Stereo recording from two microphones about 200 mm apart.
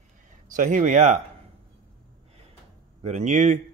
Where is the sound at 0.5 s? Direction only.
40° right (ahead or behind).